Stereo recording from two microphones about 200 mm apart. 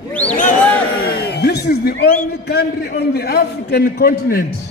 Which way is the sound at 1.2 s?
55° left (ahead or behind).